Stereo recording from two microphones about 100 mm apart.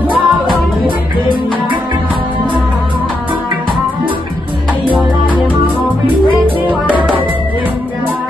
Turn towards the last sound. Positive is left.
turn(degrees=-15)  # may be behind; listen again after turning